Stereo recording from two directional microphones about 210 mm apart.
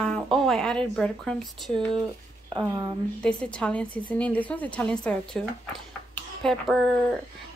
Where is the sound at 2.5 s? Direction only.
20° right (ahead or behind).